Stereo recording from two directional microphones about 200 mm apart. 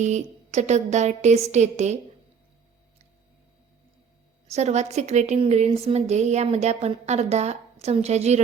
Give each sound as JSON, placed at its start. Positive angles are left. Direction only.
{"t": 0.0, "sound": "a woman's voice", "side_deg": -35}
{"t": 4.4, "sound": "a woman's voice", "side_deg": -35}